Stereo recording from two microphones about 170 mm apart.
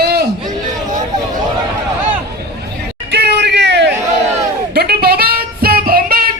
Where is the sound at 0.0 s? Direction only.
70° right (ahead or behind).